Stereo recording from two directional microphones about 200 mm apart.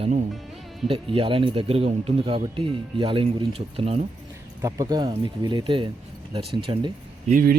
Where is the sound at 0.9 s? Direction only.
25° right (ahead or behind).